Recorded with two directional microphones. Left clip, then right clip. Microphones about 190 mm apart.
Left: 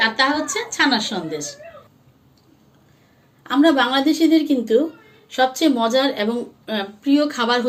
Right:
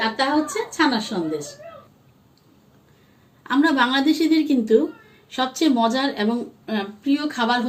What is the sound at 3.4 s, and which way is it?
A woman's voice, 40° right (ahead or behind).